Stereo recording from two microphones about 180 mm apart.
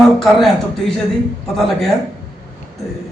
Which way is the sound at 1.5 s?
Centre (ahead or behind).